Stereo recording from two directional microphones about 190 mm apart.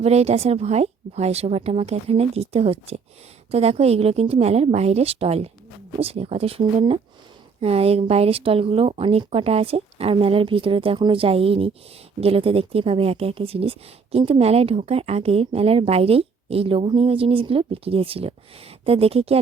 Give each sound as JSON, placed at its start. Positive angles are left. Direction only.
{"t": 0.0, "sound": "speech", "side_deg": -35}